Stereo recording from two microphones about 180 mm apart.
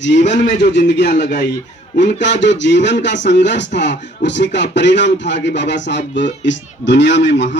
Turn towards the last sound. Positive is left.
turn(degrees=75)  # may be behind; listen again after turning